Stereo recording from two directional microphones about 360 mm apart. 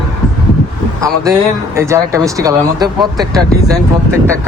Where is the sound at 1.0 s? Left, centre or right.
Centre.